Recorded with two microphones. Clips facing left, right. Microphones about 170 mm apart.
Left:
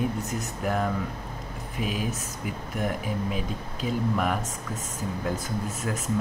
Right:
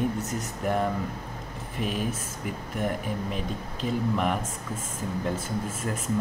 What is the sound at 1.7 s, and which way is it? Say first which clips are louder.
Speech: even; 45° right (ahead or behind).